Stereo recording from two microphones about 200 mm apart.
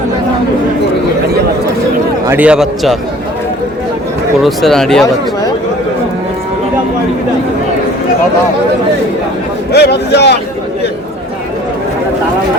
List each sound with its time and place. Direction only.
2.2 s a man's voice: 10° right (ahead or behind)
4.4 s a man's voice: centre (ahead or behind)
9.7 s speech: 55° left (ahead or behind)